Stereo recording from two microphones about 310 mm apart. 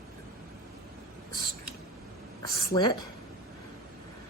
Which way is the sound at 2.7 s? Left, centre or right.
Centre.